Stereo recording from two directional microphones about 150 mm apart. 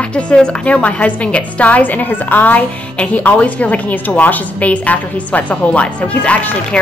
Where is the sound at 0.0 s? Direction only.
10° left (ahead or behind).